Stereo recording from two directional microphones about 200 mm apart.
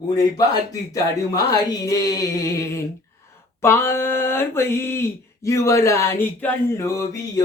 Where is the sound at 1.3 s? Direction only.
20° left (ahead or behind).